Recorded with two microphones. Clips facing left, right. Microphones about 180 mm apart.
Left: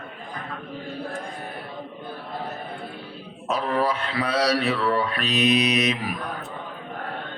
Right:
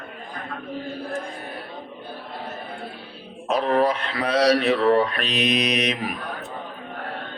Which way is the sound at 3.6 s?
35° right (ahead or behind).